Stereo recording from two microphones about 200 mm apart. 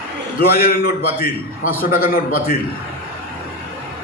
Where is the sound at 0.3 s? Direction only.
50° left (ahead or behind).